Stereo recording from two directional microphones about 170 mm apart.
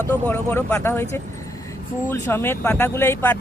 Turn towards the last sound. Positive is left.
turn(degrees=15)  # may be behind; listen again after turning